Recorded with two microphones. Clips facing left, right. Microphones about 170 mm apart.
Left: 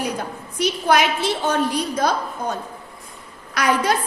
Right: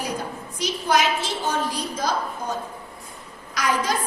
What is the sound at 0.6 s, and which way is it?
A woman's voice, 60° left (ahead or behind).